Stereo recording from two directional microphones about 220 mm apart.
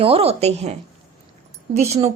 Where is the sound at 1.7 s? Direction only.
30° right (ahead or behind).